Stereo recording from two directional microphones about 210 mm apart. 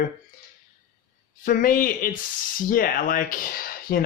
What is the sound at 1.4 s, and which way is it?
Speech, 40° left (ahead or behind).